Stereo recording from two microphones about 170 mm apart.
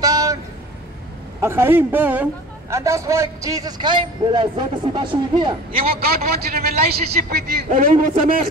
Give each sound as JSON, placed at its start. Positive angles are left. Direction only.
{"t": 0.0, "sound": "vehicle", "side_deg": -20}
{"t": 1.4, "sound": "a man's voice", "side_deg": -15}
{"t": 6.5, "sound": "a man's voice", "side_deg": -65}